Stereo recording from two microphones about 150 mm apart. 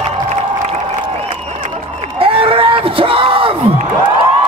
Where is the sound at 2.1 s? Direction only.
40° right (ahead or behind).